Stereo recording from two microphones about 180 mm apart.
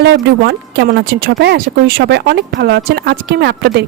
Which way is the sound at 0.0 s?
75° right (ahead or behind).